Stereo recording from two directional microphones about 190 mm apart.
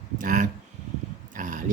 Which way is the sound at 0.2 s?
45° right (ahead or behind).